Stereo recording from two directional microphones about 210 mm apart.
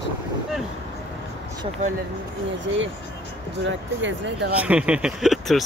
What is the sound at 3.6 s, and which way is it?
Speech, 60° right (ahead or behind).